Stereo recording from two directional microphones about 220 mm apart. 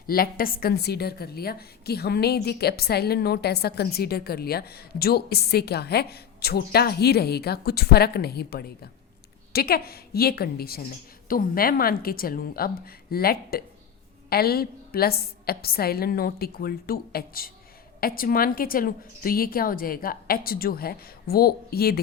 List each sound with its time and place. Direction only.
0.1 s a woman's voice: 40° left (ahead or behind)